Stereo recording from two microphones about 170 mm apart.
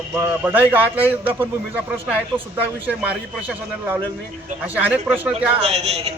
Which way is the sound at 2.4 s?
30° right (ahead or behind).